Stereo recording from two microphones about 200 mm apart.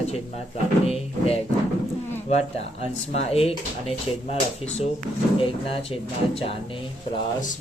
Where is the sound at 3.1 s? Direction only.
30° left (ahead or behind).